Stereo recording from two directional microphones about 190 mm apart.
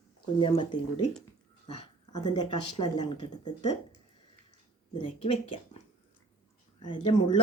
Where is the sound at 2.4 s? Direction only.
25° left (ahead or behind).